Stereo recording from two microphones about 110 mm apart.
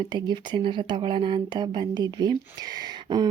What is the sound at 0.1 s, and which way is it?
Speech, 45° right (ahead or behind).